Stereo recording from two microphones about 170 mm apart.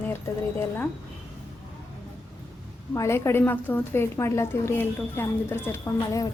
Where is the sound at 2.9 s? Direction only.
15° left (ahead or behind).